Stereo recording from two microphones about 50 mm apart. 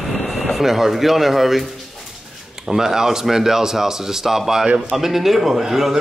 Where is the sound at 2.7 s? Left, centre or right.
Centre.